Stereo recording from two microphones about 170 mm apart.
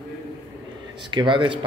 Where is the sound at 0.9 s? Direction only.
25° right (ahead or behind).